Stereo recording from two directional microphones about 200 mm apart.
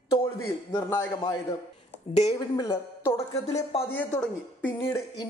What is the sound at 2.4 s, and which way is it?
A man's voice, 25° left (ahead or behind).